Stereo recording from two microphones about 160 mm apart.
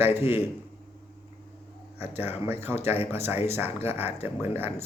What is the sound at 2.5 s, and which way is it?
Speech, 15° right (ahead or behind).